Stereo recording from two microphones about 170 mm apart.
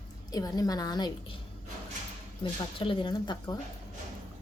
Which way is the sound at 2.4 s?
30° left (ahead or behind).